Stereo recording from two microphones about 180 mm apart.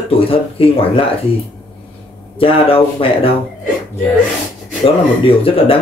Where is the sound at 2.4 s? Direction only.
30° left (ahead or behind).